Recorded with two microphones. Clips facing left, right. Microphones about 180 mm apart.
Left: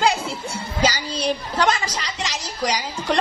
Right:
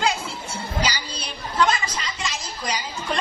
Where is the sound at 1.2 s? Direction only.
90° left.